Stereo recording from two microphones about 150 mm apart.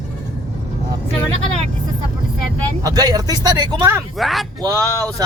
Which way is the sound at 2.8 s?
25° right (ahead or behind).